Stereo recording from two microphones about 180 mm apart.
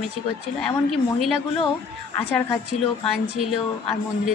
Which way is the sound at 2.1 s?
5° left (ahead or behind).